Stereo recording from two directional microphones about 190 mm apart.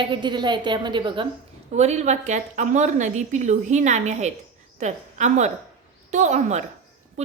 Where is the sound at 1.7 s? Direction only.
35° right (ahead or behind).